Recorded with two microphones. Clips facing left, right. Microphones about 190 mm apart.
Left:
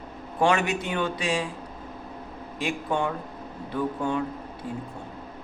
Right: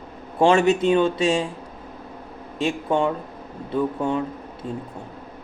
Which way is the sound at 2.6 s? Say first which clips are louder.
Right 6 dB; 25° right (ahead or behind).